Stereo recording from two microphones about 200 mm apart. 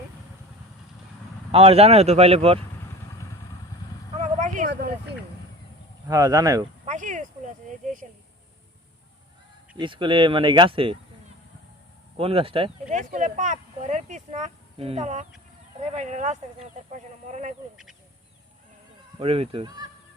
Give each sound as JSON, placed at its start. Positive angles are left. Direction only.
{"t": 1.5, "sound": "speech", "side_deg": -30}
{"t": 4.2, "sound": "vehicle", "side_deg": -40}
{"t": 6.1, "sound": "speech", "side_deg": -20}
{"t": 6.8, "sound": "a sound", "side_deg": -40}
{"t": 9.7, "sound": "speech", "side_deg": -25}
{"t": 12.1, "sound": "speech", "side_deg": -30}
{"t": 12.9, "sound": "speech", "side_deg": -40}
{"t": 19.2, "sound": "speech", "side_deg": -30}